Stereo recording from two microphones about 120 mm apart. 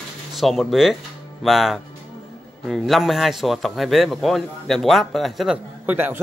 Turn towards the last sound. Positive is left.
turn(degrees=-15)  # may be behind; listen again after turning